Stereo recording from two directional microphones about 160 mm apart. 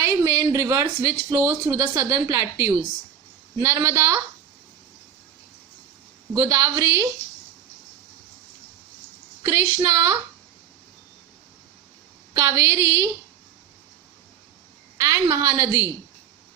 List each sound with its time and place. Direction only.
0.0 s speech: 15° right (ahead or behind)
6.3 s speech: 20° right (ahead or behind)
9.4 s speech: 20° right (ahead or behind)
12.3 s speech: 20° right (ahead or behind)
14.9 s speech: 20° right (ahead or behind)